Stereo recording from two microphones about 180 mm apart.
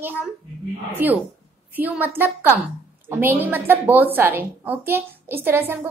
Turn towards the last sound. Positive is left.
turn(degrees=-15)  # may be behind; listen again after turning